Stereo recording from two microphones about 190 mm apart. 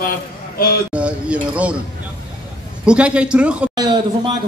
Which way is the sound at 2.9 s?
5° right (ahead or behind).